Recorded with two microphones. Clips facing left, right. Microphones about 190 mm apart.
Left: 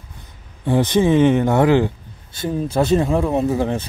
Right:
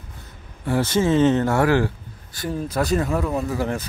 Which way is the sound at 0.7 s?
15° left (ahead or behind).